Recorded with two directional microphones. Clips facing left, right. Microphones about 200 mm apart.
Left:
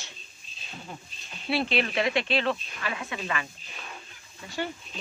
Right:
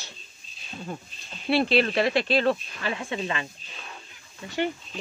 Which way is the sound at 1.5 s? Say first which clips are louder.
Right 5 dB; 40° right (ahead or behind).